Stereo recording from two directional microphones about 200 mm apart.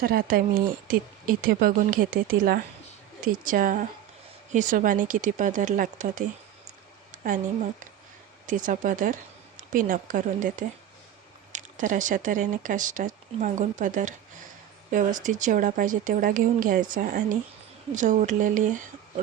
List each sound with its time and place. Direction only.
0.0 s speech: 45° right (ahead or behind)
8.4 s speech: 40° right (ahead or behind)